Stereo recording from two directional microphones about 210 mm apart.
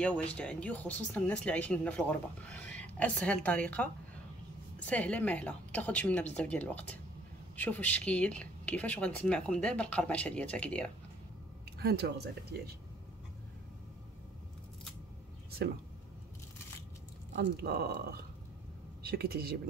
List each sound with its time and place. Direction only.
0.0 s speech: 5° left (ahead or behind)
11.8 s speech: 50° right (ahead or behind)
17.4 s speech: 50° right (ahead or behind)